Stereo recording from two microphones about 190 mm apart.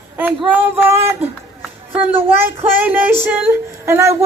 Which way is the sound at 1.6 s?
10° right (ahead or behind).